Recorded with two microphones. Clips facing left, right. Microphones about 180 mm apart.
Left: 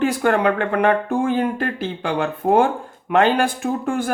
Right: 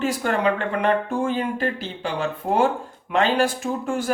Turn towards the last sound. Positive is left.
turn(degrees=55)  # may be behind; listen again after turning